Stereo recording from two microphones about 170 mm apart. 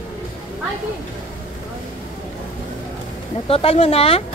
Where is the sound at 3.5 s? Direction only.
35° left (ahead or behind).